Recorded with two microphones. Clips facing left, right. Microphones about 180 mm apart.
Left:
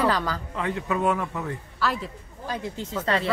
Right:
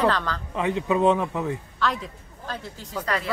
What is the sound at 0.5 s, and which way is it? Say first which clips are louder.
Speech: right 6 dB; 20° right (ahead or behind).